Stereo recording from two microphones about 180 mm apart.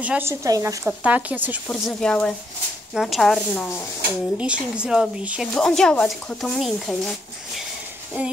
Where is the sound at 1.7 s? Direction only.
5° left (ahead or behind).